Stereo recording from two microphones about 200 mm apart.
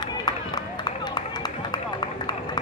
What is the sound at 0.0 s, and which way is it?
Run, 20° left (ahead or behind).